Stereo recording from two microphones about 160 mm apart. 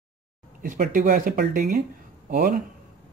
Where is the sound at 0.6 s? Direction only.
60° right (ahead or behind).